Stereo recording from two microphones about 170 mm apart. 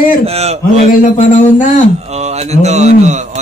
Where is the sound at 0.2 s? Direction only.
35° right (ahead or behind).